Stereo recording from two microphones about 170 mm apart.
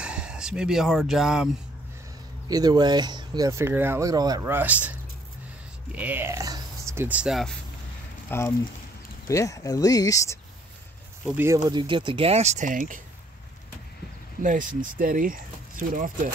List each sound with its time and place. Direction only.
0.0 s speech: 5° right (ahead or behind)
2.4 s speech: 25° right (ahead or behind); by 7.5 s centre (ahead or behind)
8.3 s speech: 15° left (ahead or behind)
11.2 s speech: 15° right (ahead or behind); by 13.0 s 50° right (ahead or behind)
14.4 s speech: 50° right (ahead or behind)